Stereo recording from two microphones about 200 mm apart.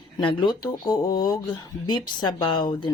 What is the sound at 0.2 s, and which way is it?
Speech, 25° left (ahead or behind).